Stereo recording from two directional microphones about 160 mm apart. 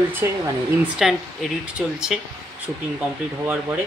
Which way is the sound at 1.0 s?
Centre (ahead or behind).